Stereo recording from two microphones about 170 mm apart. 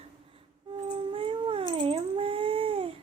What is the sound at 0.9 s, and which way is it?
Dog, 35° right (ahead or behind).